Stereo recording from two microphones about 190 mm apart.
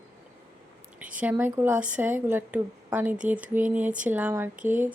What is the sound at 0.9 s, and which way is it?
Speech, 5° right (ahead or behind).